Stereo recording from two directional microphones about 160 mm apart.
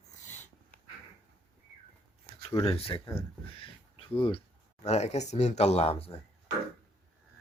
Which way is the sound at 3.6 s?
35° left (ahead or behind).